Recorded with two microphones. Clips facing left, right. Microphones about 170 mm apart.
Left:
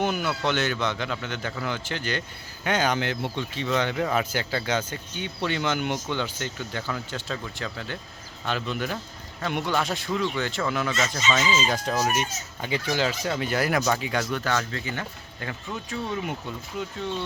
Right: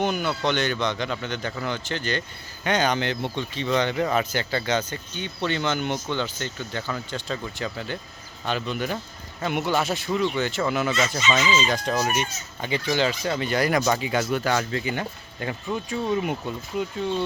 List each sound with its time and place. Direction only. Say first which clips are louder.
0.0 s a man's voice: right 1 dB; 5° left (ahead or behind); by 16.9 s 20° right (ahead or behind)